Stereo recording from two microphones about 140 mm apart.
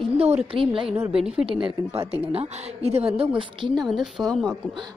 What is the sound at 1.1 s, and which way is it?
Speech, 5° right (ahead or behind).